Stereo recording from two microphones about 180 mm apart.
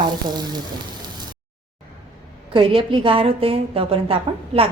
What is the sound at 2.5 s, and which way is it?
A woman's voice, 30° right (ahead or behind).